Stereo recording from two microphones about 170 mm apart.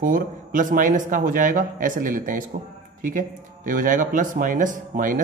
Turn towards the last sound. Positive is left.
turn(degrees=-50)  # may be behind; listen again after turning